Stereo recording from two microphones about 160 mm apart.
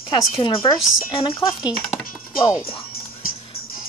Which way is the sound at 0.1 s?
30° left (ahead or behind).